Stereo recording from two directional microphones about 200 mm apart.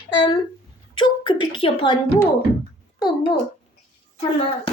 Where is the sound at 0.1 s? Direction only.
20° left (ahead or behind).